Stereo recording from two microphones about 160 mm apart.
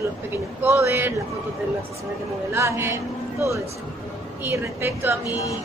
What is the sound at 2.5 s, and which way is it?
A woman's voice, 15° right (ahead or behind).